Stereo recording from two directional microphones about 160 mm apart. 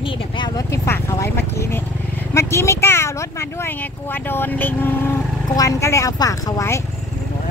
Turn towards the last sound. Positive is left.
turn(degrees=20)  # may be behind; listen again after turning